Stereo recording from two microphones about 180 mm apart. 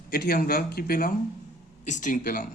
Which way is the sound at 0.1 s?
60° left (ahead or behind).